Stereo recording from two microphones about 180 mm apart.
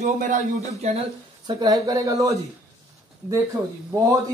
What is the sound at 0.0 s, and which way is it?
Speech, 45° right (ahead or behind).